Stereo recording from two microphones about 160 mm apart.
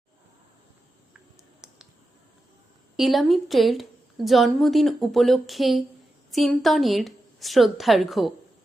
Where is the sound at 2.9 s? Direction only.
Centre (ahead or behind).